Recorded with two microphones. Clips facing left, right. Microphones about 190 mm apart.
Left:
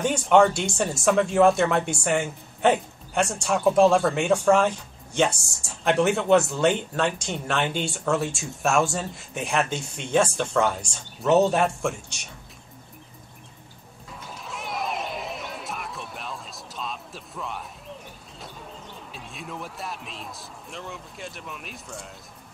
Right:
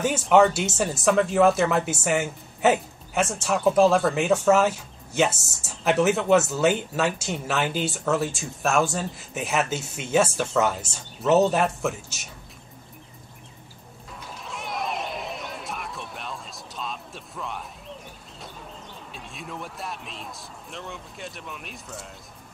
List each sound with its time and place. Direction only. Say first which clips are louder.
0.0 s speech: even; 5° right (ahead or behind)
14.3 s music: even; centre (ahead or behind)
18.4 s speech: even; centre (ahead or behind)